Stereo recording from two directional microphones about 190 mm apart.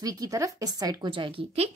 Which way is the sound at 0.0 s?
20° right (ahead or behind).